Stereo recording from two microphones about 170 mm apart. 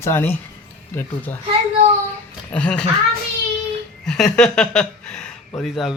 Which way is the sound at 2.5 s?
5° left (ahead or behind).